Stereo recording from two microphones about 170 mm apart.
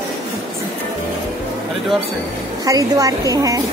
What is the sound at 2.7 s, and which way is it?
Speech, 20° right (ahead or behind).